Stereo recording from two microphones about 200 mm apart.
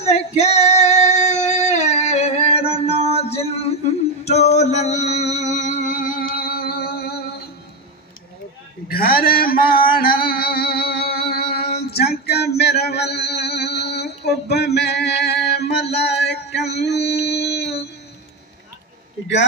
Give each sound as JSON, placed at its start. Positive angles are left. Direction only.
{"t": 0.0, "sound": "female singing", "side_deg": 30}
{"t": 4.2, "sound": "a sound", "side_deg": 30}
{"t": 4.6, "sound": "music", "side_deg": 35}
{"t": 8.8, "sound": "mantra", "side_deg": 50}
{"t": 11.9, "sound": "music", "side_deg": 50}
{"t": 16.0, "sound": "a sound", "side_deg": 55}